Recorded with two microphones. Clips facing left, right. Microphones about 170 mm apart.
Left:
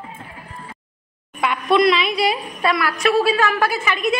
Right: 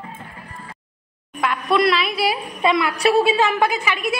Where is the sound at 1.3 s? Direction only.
Centre (ahead or behind).